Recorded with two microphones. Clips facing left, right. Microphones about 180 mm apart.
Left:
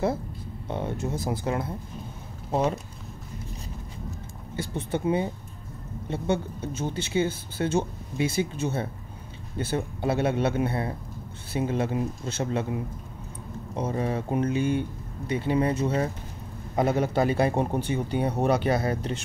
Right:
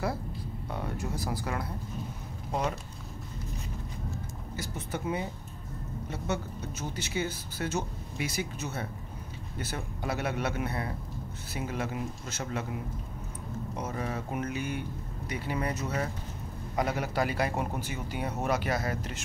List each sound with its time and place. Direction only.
0.7 s speech: 25° left (ahead or behind)
4.6 s speech: 30° left (ahead or behind)
13.7 s speech: 30° left (ahead or behind)